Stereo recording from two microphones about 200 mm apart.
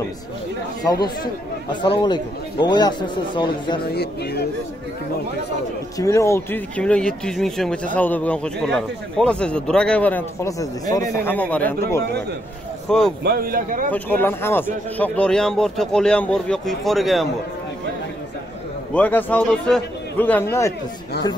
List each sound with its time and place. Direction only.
1.0 s a man's voice: 20° left (ahead or behind)
3.9 s speech: 55° left (ahead or behind)
5.9 s a man's voice: 15° left (ahead or behind)
13.2 s speech: 50° right (ahead or behind)
13.8 s speech: 10° left (ahead or behind)
18.9 s a man's voice: 10° left (ahead or behind)